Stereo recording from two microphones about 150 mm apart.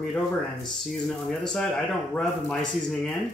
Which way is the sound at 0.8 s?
5° left (ahead or behind).